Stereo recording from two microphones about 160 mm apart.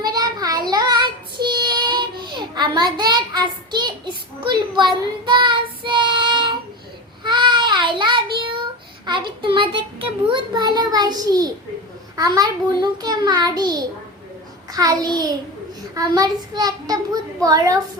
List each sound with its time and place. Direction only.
0.1 s child singing: 25° right (ahead or behind)
9.0 s a child's voice: 30° right (ahead or behind)